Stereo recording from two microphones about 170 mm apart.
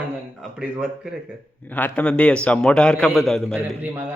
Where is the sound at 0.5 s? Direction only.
5° right (ahead or behind).